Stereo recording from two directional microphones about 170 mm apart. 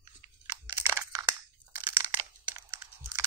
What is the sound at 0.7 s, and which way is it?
Crunch, 15° right (ahead or behind).